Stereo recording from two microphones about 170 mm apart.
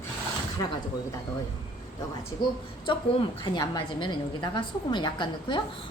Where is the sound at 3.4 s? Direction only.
25° left (ahead or behind).